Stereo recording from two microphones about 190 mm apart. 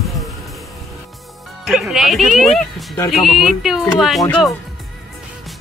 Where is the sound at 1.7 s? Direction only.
5° right (ahead or behind).